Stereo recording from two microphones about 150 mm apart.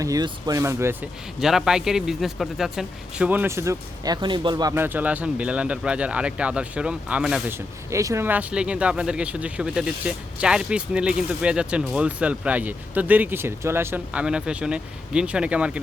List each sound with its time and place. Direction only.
0.0 s speech: 25° right (ahead or behind)
1.4 s speech: 5° right (ahead or behind); by 4.7 s 30° right (ahead or behind)
4.7 s speech: 15° right (ahead or behind)
7.9 s speech: 20° right (ahead or behind)